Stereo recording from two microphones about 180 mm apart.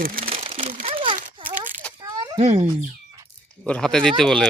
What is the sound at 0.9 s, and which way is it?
Crumpling, 30° right (ahead or behind).